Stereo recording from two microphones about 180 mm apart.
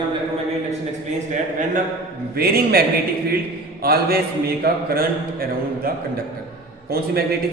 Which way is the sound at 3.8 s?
60° right (ahead or behind).